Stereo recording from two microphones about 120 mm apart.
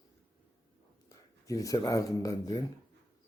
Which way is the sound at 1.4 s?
30° left (ahead or behind).